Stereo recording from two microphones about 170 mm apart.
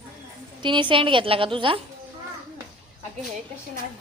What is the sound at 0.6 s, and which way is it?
A woman's voice, 30° right (ahead or behind).